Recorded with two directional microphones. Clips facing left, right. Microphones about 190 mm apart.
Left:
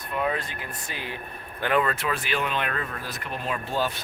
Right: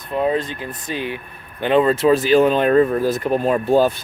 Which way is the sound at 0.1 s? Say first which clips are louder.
Right 8 dB; 30° right (ahead or behind).